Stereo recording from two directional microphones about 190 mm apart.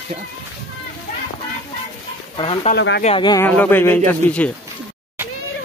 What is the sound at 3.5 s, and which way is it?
A man's voice, 10° left (ahead or behind).